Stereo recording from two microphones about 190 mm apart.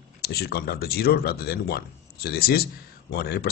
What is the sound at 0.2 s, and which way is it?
Speech, 55° left (ahead or behind).